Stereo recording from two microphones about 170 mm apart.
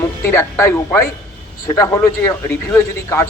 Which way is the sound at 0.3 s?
15° left (ahead or behind).